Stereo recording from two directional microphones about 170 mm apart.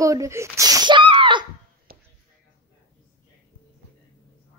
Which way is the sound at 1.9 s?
60° right (ahead or behind).